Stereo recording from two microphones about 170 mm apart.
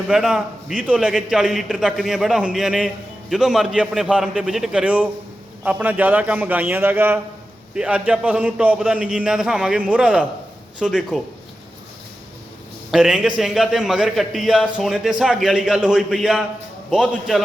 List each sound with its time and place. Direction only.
0.1 s a man's voice: 5° right (ahead or behind)
12.9 s a man's voice: centre (ahead or behind)